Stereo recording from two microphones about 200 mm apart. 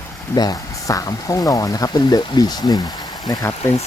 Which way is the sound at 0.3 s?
20° left (ahead or behind).